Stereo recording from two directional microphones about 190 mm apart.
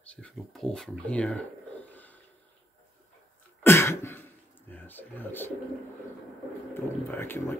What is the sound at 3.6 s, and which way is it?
Cough, 15° left (ahead or behind).